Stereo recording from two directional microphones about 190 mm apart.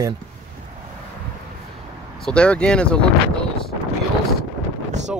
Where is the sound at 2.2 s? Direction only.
5° left (ahead or behind).